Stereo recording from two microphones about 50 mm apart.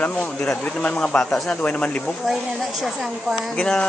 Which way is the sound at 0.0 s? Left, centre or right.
Left.